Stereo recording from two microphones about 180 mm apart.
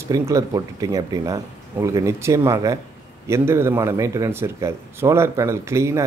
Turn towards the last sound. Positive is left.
turn(degrees=-15)  # may be behind; listen again after turning